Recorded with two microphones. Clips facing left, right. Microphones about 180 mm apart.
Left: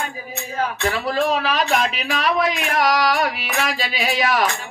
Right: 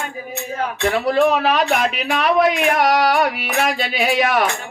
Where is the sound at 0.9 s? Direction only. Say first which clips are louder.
Right 7 dB; 55° right (ahead or behind).